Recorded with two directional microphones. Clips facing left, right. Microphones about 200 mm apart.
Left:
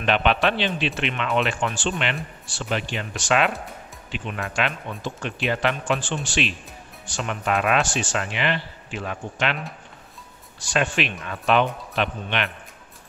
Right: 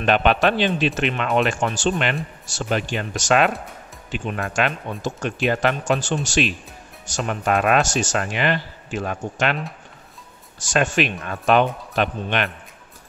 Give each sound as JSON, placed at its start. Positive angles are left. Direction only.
{"t": 0.0, "sound": "speech", "side_deg": -45}
{"t": 10.6, "sound": "speech", "side_deg": -45}